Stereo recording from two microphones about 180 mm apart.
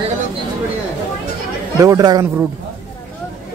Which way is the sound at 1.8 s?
20° right (ahead or behind).